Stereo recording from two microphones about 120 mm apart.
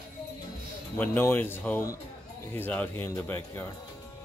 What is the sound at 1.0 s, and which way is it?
Speech, 15° left (ahead or behind).